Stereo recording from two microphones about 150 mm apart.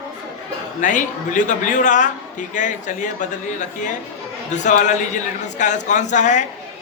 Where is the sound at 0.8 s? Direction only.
60° left (ahead or behind).